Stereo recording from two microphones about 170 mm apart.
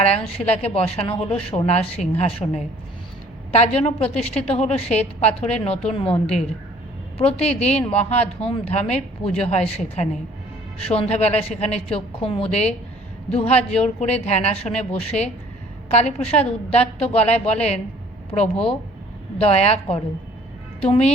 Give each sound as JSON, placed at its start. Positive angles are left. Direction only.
{"t": 0.3, "sound": "a woman's voice", "side_deg": 35}
{"t": 18.3, "sound": "speech", "side_deg": 20}
{"t": 19.4, "sound": "a woman's voice", "side_deg": 40}